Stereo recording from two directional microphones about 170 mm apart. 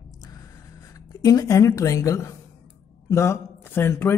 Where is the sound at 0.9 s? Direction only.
20° left (ahead or behind).